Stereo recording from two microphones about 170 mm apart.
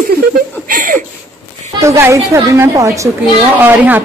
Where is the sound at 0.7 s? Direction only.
55° right (ahead or behind).